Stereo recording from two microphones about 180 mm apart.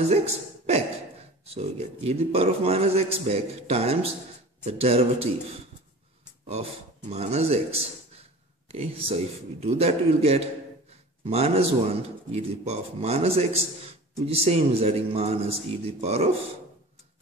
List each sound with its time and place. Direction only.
0.0 s a man's voice: 35° right (ahead or behind)
6.4 s a man's voice: 35° right (ahead or behind)